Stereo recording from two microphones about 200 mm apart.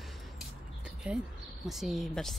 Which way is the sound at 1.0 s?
5° right (ahead or behind).